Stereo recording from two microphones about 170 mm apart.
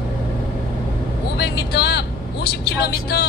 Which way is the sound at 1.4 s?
75° left (ahead or behind).